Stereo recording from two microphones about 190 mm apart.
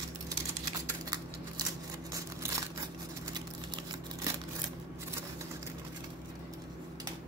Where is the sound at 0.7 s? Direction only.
20° right (ahead or behind).